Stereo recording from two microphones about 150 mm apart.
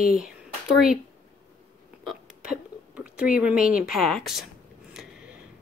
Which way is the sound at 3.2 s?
10° right (ahead or behind).